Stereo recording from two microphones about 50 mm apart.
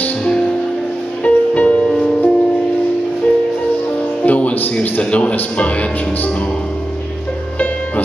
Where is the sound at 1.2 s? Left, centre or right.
Left.